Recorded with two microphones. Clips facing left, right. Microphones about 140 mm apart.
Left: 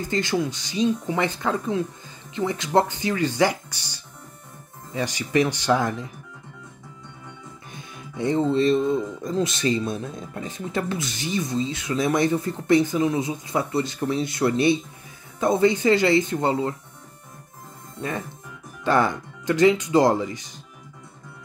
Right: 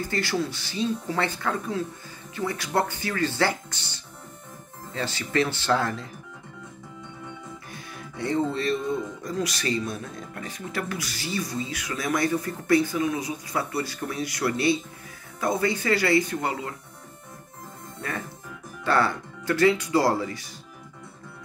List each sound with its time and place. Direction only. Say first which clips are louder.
0.1 s speech: left 5 dB; 20° left (ahead or behind)
7.7 s speech: left 2 dB; 20° left (ahead or behind)
18.9 s speech: left 3 dB; 15° left (ahead or behind)